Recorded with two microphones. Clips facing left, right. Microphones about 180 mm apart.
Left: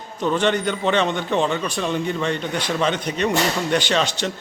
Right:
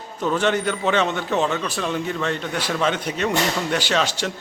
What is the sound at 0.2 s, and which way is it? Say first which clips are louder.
A man's voice: left 1 dB; 5° right (ahead or behind).